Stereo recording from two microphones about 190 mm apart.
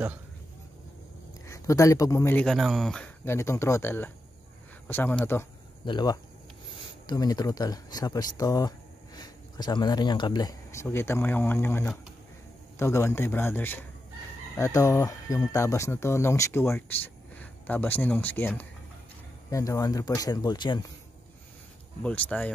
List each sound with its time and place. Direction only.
1.5 s speech: 15° left (ahead or behind)
5.9 s speech: 20° left (ahead or behind)
22.0 s speech: 10° left (ahead or behind)